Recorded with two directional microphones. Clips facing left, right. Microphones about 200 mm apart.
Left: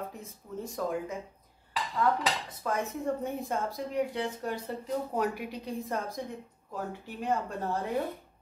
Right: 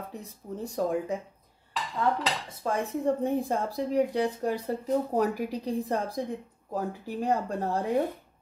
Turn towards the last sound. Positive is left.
turn(degrees=-35)  # may be behind; listen again after turning